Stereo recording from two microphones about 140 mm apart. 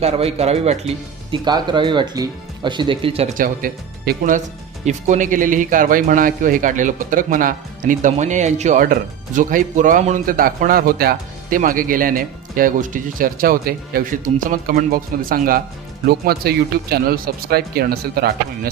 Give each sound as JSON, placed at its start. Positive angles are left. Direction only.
{"t": 0.0, "sound": "speech", "side_deg": -45}
{"t": 1.3, "sound": "speech", "side_deg": -30}
{"t": 3.3, "sound": "speech", "side_deg": -90}
{"t": 4.9, "sound": "speech", "side_deg": -60}